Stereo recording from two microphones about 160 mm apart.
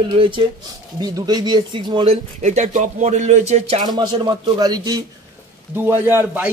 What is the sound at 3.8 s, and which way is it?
A man's voice, 25° right (ahead or behind).